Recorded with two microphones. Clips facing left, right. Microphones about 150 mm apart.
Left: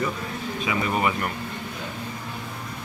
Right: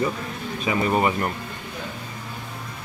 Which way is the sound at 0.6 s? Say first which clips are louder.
Right 4 dB; 35° right (ahead or behind).